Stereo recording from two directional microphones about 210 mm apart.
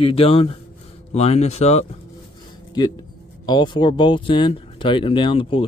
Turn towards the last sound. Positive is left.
turn(degrees=25)  # may be behind; listen again after turning